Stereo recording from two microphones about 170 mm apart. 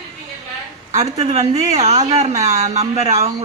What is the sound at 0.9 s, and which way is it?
Speech, 40° right (ahead or behind).